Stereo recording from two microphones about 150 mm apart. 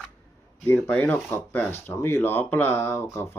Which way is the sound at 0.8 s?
10° left (ahead or behind).